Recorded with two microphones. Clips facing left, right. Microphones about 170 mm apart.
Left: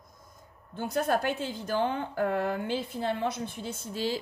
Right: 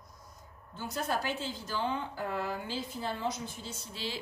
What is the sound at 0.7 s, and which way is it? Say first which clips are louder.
A woman's voice: left 6 dB; 55° left (ahead or behind).